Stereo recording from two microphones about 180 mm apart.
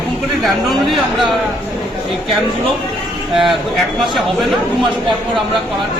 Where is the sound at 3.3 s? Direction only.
Centre (ahead or behind).